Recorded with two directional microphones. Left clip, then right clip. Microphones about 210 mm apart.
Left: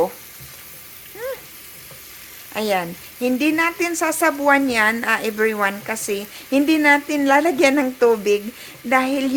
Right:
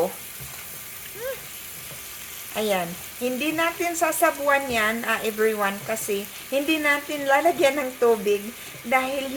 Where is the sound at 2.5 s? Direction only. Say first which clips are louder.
Left 3 dB; 50° left (ahead or behind).